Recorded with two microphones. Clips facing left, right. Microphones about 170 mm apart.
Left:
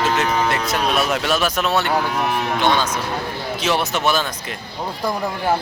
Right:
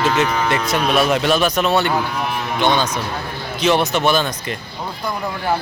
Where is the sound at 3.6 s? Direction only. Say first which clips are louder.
Right 4 dB; 5° left (ahead or behind).